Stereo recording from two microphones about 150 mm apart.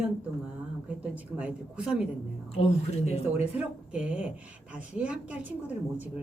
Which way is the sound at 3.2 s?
10° right (ahead or behind).